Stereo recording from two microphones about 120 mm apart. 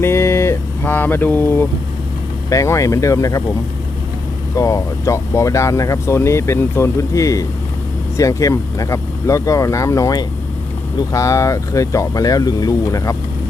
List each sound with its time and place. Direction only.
0.0 s mantra: 20° left (ahead or behind)
2.5 s speech: 25° left (ahead or behind)
4.5 s speech: 25° left (ahead or behind)